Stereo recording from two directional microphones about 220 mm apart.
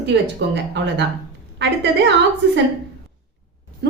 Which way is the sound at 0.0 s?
50° right (ahead or behind).